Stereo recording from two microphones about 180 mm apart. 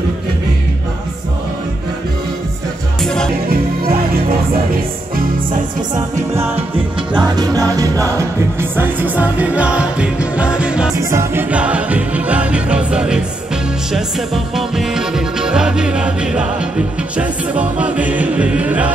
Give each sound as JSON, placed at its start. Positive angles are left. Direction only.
{"t": 3.0, "sound": "music", "side_deg": 5}
{"t": 3.4, "sound": "music", "side_deg": -55}
{"t": 5.9, "sound": "music", "side_deg": -15}
{"t": 11.0, "sound": "music", "side_deg": -15}